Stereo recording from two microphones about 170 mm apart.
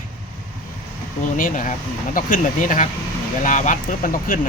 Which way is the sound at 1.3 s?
55° left (ahead or behind).